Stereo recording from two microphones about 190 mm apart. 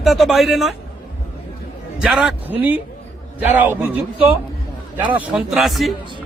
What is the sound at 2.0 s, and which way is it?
A man's voice, 5° right (ahead or behind).